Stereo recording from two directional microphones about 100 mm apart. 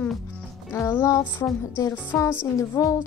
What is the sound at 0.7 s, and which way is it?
Speech, 20° left (ahead or behind).